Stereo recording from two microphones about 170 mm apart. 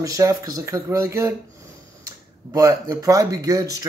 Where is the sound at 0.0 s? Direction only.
20° right (ahead or behind).